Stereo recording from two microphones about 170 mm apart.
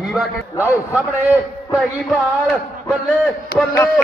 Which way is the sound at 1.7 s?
5° right (ahead or behind).